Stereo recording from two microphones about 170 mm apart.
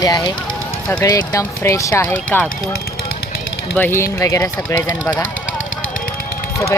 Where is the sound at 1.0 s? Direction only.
20° left (ahead or behind).